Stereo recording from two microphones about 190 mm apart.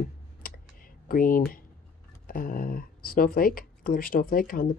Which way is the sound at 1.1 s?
45° left (ahead or behind).